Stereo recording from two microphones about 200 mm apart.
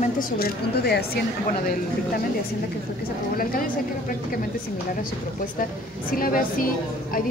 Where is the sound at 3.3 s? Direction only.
45° left (ahead or behind).